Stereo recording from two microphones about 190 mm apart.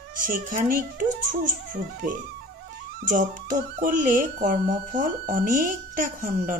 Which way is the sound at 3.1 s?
45° right (ahead or behind).